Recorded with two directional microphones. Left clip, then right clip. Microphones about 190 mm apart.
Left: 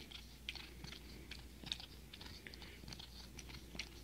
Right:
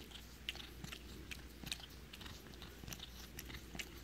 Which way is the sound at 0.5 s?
20° right (ahead or behind).